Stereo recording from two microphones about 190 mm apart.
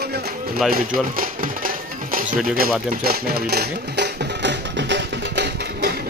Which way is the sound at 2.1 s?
50° right (ahead or behind).